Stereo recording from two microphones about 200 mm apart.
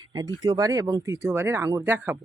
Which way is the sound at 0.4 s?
20° right (ahead or behind).